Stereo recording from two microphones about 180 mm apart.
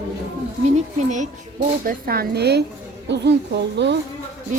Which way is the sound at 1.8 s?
55° right (ahead or behind).